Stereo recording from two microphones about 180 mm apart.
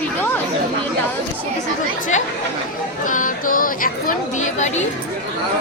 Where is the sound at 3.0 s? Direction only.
45° left (ahead or behind).